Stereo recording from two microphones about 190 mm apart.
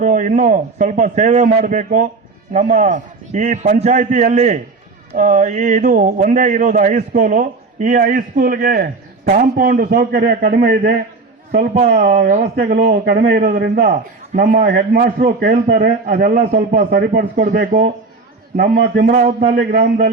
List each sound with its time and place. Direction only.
0.0 s a man's voice: 45° right (ahead or behind)
11.5 s a man's voice: 35° right (ahead or behind)
11.9 s a man's voice: 50° right (ahead or behind)